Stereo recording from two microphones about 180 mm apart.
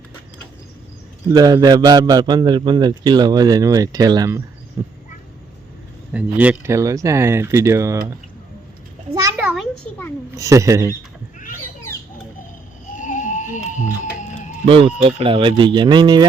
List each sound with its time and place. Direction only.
1.3 s a man's voice: 20° right (ahead or behind)
6.1 s speech: 10° right (ahead or behind)
9.4 s a sound: 5° right (ahead or behind)
10.3 s speech: 15° right (ahead or behind)
13.0 s a sound: 45° left (ahead or behind)
14.7 s a man's voice: 30° right (ahead or behind)